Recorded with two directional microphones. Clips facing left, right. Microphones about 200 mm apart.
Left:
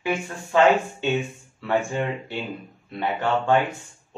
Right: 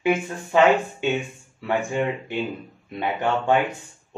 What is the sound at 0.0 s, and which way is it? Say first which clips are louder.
Speech: right 4 dB; 20° right (ahead or behind).